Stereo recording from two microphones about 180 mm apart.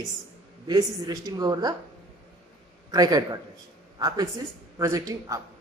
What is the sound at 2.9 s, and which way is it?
A man's voice, 20° right (ahead or behind).